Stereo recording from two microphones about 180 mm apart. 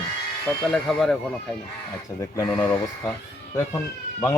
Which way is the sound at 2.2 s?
20° left (ahead or behind).